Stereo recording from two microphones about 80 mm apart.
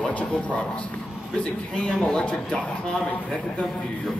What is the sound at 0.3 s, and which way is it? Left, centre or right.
A man's voice, centre.